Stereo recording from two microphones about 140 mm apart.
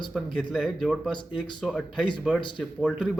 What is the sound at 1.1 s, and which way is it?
Speech, 35° left (ahead or behind).